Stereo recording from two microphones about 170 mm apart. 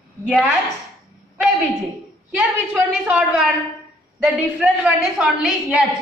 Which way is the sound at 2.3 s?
5° right (ahead or behind).